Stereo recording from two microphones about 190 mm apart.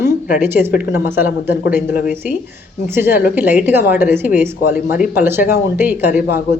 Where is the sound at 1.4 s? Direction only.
60° left (ahead or behind).